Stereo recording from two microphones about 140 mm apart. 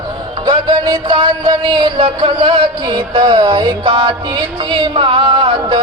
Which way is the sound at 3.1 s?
35° right (ahead or behind).